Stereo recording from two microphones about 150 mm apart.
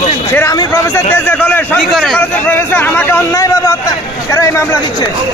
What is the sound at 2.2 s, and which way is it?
A man's voice, 15° left (ahead or behind).